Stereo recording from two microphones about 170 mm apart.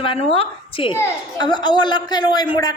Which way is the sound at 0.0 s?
30° left (ahead or behind).